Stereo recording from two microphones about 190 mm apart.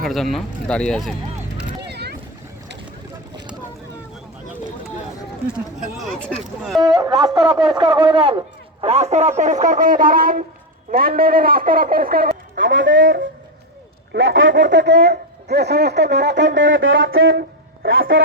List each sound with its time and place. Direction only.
0.0 s speech: centre (ahead or behind)
1.9 s boat: 60° right (ahead or behind)
6.0 s speech: 5° left (ahead or behind)
6.8 s a man's voice: 20° right (ahead or behind); by 12.4 s 50° right (ahead or behind)
12.5 s speech: 75° right (ahead or behind)
18.1 s a sound: 90° right